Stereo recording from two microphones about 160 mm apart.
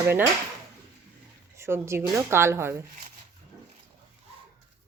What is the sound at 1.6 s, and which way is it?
A woman's voice, 15° right (ahead or behind).